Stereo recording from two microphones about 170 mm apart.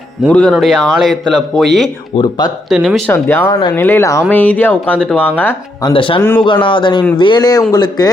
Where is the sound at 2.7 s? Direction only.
Centre (ahead or behind).